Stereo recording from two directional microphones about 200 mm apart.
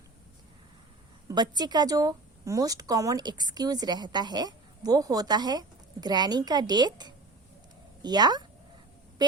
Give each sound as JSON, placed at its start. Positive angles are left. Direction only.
{"t": 1.3, "sound": "a woman's voice", "side_deg": -20}